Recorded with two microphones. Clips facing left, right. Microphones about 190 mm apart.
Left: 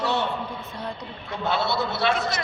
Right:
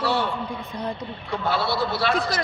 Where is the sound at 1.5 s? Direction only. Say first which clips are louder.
Right 1 dB; 20° left (ahead or behind).